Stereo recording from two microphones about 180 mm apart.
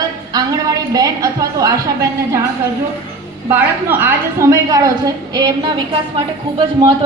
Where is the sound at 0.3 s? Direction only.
20° right (ahead or behind).